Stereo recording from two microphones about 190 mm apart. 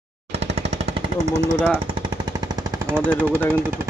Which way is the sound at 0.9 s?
35° right (ahead or behind).